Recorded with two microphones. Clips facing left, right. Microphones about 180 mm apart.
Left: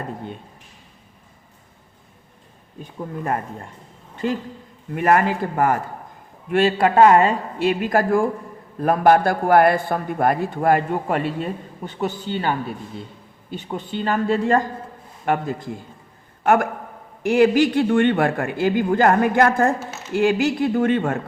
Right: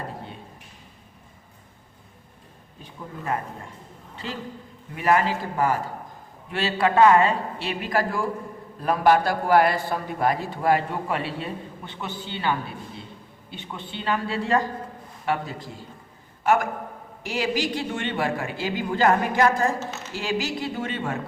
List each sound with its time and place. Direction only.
4.9 s a man's voice: 55° left (ahead or behind)